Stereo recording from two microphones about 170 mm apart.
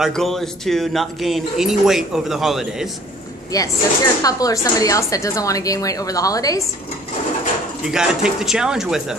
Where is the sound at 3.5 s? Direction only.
20° left (ahead or behind).